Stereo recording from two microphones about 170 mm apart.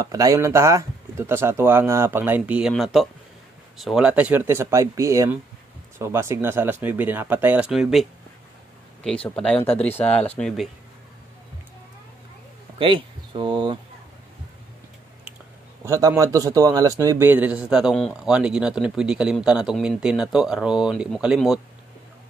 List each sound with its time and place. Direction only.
0.0 s a man's voice: 20° right (ahead or behind); by 10.5 s 10° left (ahead or behind)
12.7 s speech: 30° right (ahead or behind)
15.8 s a man's voice: 15° right (ahead or behind)